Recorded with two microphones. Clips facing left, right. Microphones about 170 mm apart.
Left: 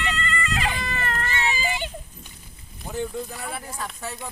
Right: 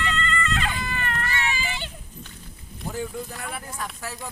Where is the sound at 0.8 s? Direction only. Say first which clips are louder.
Left 1 dB; 35° left (ahead or behind).